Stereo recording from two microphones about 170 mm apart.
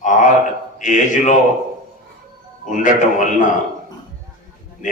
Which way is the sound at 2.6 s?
45° left (ahead or behind).